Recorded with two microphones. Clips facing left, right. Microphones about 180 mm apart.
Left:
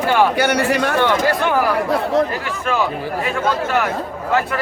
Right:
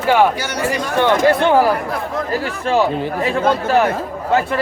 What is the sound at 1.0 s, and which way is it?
Speech, 25° right (ahead or behind).